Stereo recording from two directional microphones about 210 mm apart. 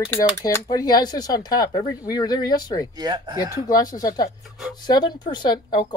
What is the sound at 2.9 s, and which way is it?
Speech, 20° right (ahead or behind).